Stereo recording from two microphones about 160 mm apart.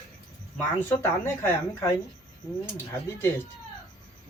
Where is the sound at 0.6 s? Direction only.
15° left (ahead or behind).